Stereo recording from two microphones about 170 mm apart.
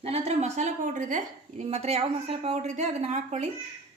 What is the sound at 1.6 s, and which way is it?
A woman's voice, 40° right (ahead or behind).